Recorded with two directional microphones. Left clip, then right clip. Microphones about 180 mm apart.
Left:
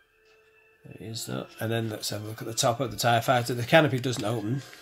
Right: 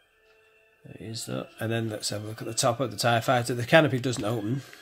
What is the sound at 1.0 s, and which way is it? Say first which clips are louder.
Speech: right 1 dB; 20° right (ahead or behind).